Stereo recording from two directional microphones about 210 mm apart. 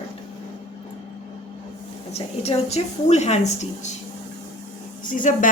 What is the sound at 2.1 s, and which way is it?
Speech, 30° left (ahead or behind).